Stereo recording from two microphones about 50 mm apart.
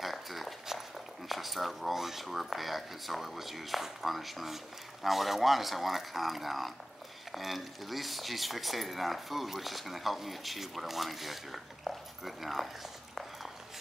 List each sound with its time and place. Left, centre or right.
0.0 s walk: centre
1.3 s speech: centre
13.1 s a sound: centre